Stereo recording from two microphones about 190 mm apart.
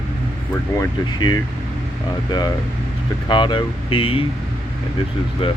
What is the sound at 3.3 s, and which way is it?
Speech, 25° left (ahead or behind).